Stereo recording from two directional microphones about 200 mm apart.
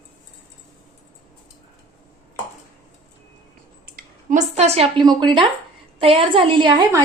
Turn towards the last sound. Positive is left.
turn(degrees=-20)  # may be behind; listen again after turning